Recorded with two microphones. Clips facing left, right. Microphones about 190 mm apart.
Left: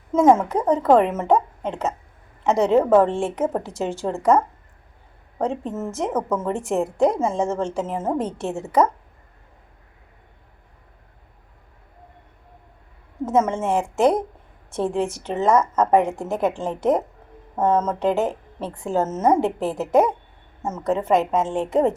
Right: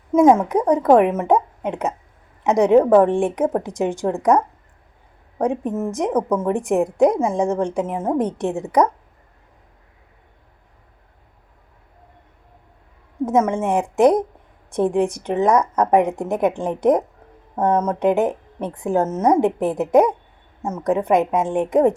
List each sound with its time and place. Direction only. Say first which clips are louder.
0.3 s a woman's voice: right 3 dB; 15° right (ahead or behind)
5.4 s a woman's voice: right 4 dB; 15° right (ahead or behind)
13.2 s a woman's voice: right 2 dB; 15° right (ahead or behind)